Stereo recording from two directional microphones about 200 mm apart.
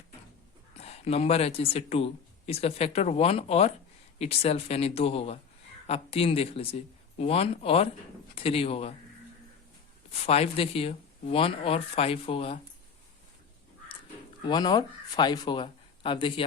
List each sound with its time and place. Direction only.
0.8 s speech: 30° left (ahead or behind)
10.2 s speech: 30° left (ahead or behind)
14.4 s speech: 20° left (ahead or behind)